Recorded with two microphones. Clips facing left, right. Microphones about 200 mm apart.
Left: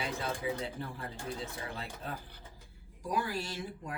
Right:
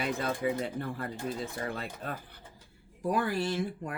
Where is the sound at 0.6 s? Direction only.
55° right (ahead or behind).